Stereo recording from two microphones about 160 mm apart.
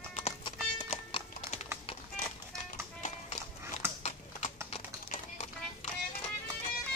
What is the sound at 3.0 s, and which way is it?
Run, 50° left (ahead or behind).